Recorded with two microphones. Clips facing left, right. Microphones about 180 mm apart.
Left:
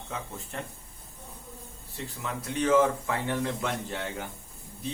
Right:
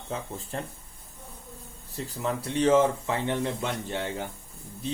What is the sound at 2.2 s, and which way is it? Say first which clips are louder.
Speech: right 4 dB; 30° right (ahead or behind).